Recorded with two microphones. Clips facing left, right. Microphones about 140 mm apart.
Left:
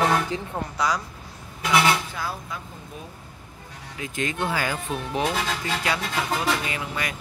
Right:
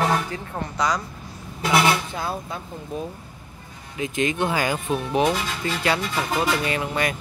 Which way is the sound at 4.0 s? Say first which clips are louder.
Right 5 dB; 20° right (ahead or behind).